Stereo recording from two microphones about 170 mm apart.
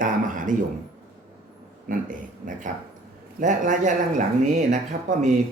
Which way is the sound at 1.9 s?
55° right (ahead or behind).